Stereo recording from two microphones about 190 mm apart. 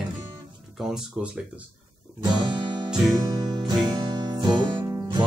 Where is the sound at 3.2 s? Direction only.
20° right (ahead or behind).